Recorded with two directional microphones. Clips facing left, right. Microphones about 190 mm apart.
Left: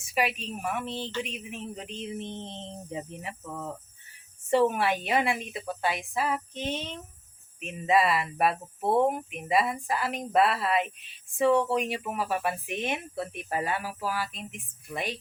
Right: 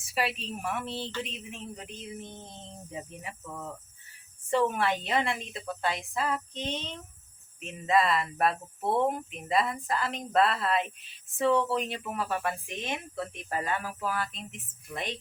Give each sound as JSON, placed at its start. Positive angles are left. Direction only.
{"t": 0.1, "sound": "a woman's voice", "side_deg": 15}
{"t": 0.6, "sound": "speech", "side_deg": 0}
{"t": 1.2, "sound": "a sound", "side_deg": 10}
{"t": 4.5, "sound": "speech", "side_deg": 10}